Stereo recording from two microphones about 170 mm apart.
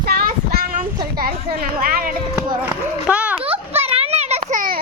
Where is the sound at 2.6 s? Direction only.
5° right (ahead or behind).